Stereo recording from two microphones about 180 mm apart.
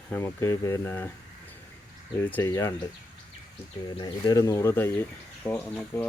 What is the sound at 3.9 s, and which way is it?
Speech, 25° left (ahead or behind).